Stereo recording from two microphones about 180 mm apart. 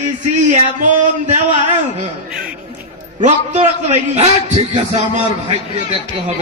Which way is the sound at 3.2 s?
40° right (ahead or behind).